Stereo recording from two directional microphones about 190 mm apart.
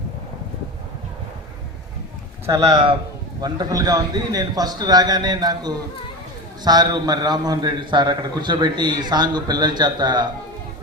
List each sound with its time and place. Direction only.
2.5 s a man's voice: 20° right (ahead or behind)